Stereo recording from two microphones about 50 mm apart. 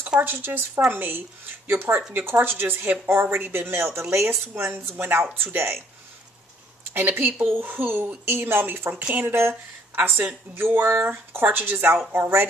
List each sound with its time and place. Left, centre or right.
0.2 s speech: right
6.9 s a woman's voice: right